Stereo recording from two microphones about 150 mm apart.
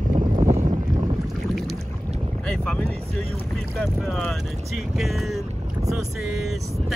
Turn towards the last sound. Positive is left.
turn(degrees=0)  # may be behind; listen again after turning